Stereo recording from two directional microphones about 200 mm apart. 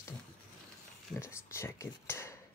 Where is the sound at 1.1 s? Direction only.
15° left (ahead or behind).